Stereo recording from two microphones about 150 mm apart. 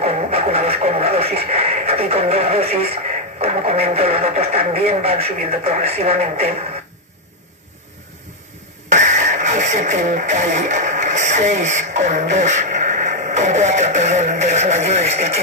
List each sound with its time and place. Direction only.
0.0 s speech: 40° right (ahead or behind)
3.3 s music: 45° right (ahead or behind)
4.2 s speech: 45° right (ahead or behind)
8.8 s speech: 50° right (ahead or behind)